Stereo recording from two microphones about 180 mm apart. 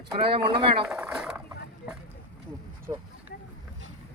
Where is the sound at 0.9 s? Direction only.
5° right (ahead or behind).